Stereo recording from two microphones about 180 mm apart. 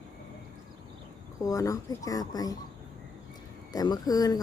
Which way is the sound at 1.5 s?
20° left (ahead or behind).